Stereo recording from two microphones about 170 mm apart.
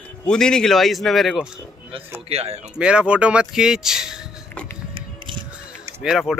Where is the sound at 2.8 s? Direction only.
5° right (ahead or behind).